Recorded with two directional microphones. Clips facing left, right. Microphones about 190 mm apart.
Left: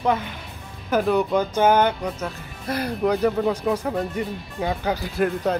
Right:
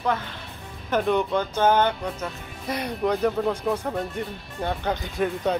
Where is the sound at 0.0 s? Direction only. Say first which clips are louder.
Left 4 dB; 20° left (ahead or behind).